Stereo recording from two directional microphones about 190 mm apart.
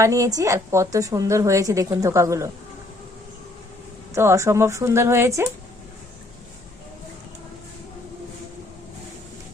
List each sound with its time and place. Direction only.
0.0 s a woman's voice: 15° right (ahead or behind)
4.1 s a woman's voice: 15° right (ahead or behind)